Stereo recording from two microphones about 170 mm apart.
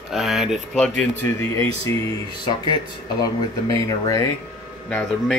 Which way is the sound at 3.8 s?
20° left (ahead or behind).